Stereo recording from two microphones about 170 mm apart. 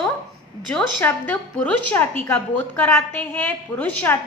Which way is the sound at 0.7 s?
10° left (ahead or behind).